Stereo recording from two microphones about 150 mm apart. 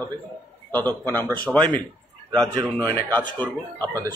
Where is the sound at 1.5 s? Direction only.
Centre (ahead or behind).